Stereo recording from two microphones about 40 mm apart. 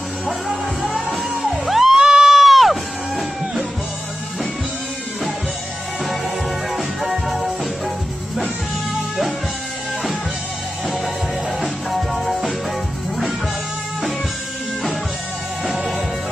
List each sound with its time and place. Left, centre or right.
1.1 s music: centre
2.0 s music: centre
6.8 s music: centre
8.9 s music: centre
11.6 s music: centre
15.6 s music: centre